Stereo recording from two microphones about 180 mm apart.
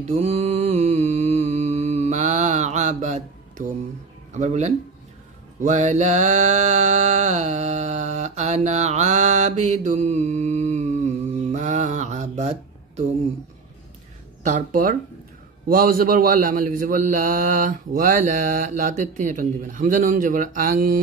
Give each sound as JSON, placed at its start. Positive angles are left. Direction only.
{"t": 0.0, "sound": "mantra", "side_deg": -40}
{"t": 4.3, "sound": "speech", "side_deg": -40}
{"t": 5.6, "sound": "mantra", "side_deg": -40}
{"t": 14.4, "sound": "a man's voice", "side_deg": -45}